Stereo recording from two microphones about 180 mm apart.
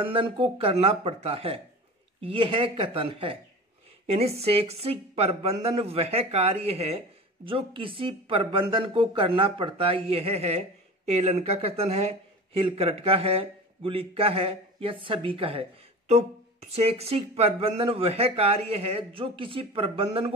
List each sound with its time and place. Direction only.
0.0 s speech: 30° right (ahead or behind)